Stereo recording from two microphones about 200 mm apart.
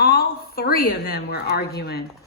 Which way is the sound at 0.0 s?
50° left (ahead or behind).